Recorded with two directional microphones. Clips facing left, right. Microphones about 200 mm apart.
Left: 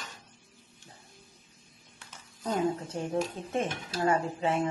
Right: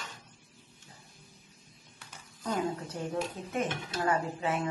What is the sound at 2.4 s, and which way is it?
Speech, 25° left (ahead or behind).